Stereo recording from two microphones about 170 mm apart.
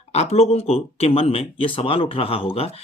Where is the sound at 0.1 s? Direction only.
40° left (ahead or behind).